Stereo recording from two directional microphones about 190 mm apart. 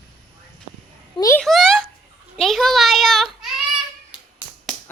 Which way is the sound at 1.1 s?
15° left (ahead or behind).